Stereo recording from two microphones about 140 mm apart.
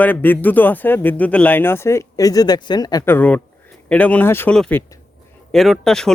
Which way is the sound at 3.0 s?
10° left (ahead or behind).